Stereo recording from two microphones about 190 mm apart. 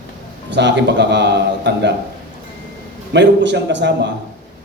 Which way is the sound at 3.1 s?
65° right (ahead or behind).